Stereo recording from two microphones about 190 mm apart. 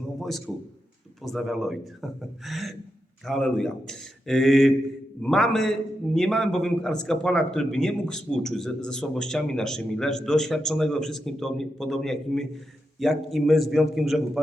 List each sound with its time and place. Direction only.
0.2 s a man's voice: centre (ahead or behind)